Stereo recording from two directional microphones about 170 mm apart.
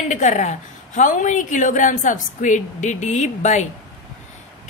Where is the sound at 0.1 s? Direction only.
45° left (ahead or behind).